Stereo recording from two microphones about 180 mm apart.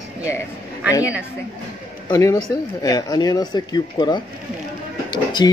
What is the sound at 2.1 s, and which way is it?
Speech, 15° left (ahead or behind).